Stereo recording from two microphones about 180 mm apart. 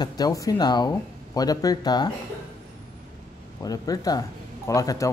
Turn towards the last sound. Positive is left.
turn(degrees=20)  # may be behind; listen again after turning